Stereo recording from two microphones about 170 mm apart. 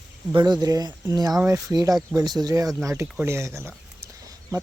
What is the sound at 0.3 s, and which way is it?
Speech, 25° right (ahead or behind).